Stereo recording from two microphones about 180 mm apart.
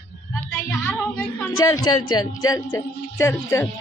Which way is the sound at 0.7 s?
15° left (ahead or behind).